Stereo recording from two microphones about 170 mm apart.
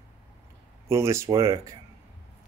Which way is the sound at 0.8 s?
15° right (ahead or behind).